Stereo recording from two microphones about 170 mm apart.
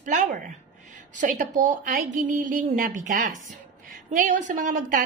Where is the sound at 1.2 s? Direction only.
50° right (ahead or behind).